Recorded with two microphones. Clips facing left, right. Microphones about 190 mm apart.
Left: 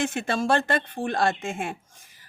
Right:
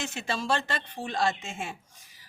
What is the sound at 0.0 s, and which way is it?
Speech, 55° left (ahead or behind).